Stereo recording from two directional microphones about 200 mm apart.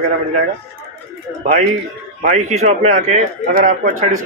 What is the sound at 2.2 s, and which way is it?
Speech, 35° right (ahead or behind).